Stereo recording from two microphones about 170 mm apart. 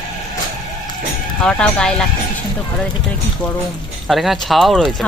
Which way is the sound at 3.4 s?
5° left (ahead or behind).